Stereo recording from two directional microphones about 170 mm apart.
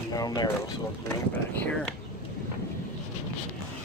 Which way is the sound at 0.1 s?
20° left (ahead or behind).